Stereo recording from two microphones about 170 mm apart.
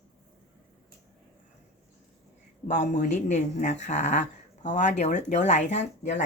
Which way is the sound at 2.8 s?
45° left (ahead or behind).